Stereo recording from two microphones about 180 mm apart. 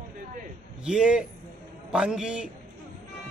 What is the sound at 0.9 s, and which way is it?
Speech, 5° right (ahead or behind).